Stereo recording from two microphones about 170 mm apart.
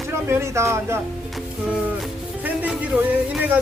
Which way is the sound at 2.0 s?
5° right (ahead or behind).